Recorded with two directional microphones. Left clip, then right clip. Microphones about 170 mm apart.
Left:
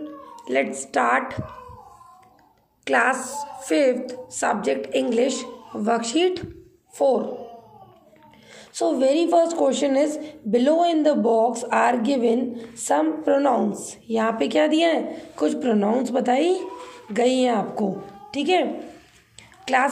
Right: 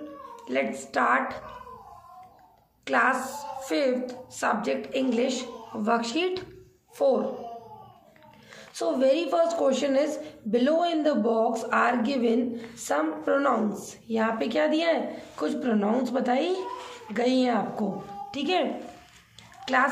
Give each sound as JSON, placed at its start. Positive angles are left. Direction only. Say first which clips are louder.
{"t": 0.5, "sound": "a woman's voice", "louder": "left 5 dB", "side_deg": 35}
{"t": 2.8, "sound": "a woman's voice", "louder": "left 3 dB", "side_deg": 35}
{"t": 8.7, "sound": "a woman's voice", "louder": "left 4 dB", "side_deg": 25}